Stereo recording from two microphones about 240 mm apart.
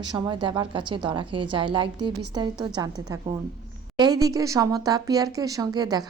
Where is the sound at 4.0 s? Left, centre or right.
Centre.